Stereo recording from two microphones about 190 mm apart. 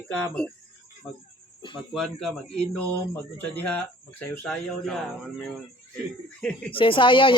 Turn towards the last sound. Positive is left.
turn(degrees=25)  # may be behind; listen again after turning